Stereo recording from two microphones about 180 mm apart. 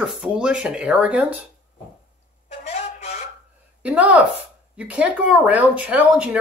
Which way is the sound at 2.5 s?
40° left (ahead or behind).